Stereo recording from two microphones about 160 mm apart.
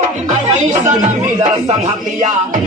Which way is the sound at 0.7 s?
45° right (ahead or behind).